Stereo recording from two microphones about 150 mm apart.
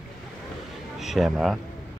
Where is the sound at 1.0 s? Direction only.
Centre (ahead or behind).